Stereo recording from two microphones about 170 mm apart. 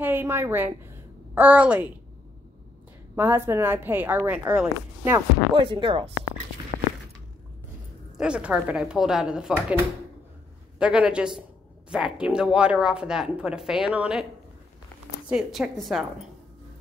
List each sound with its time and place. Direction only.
0.0 s a woman's voice: 10° right (ahead or behind)
3.2 s a woman's voice: 15° right (ahead or behind)
5.5 s speech: 30° right (ahead or behind)
8.2 s a woman's voice: 5° right (ahead or behind)
10.8 s a woman's voice: 5° right (ahead or behind)
15.2 s a woman's voice: 5° right (ahead or behind)